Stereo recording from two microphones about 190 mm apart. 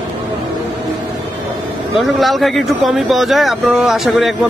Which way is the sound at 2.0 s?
Centre (ahead or behind).